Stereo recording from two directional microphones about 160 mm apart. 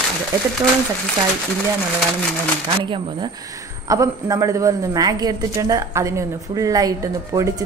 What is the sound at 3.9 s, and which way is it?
A woman's voice, 20° right (ahead or behind).